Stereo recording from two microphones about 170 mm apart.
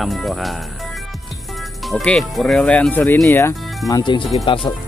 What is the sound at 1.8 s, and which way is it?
Speech, centre (ahead or behind).